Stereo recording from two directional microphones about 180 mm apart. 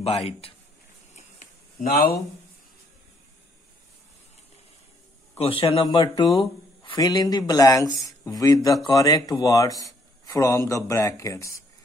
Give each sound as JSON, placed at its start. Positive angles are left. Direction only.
{"t": 0.0, "sound": "speech", "side_deg": 35}
{"t": 1.8, "sound": "speech", "side_deg": 50}
{"t": 5.4, "sound": "speech", "side_deg": 30}